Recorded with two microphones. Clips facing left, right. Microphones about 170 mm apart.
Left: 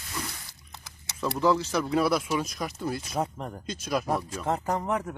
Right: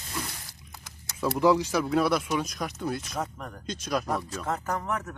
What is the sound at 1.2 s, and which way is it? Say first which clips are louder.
Speech: right 2 dB; 10° right (ahead or behind).